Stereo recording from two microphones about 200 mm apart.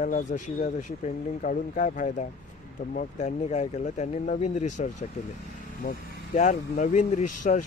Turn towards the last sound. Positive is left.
turn(degrees=35)  # may be behind; listen again after turning